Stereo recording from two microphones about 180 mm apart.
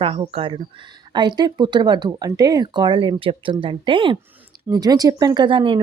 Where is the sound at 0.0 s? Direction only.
30° right (ahead or behind).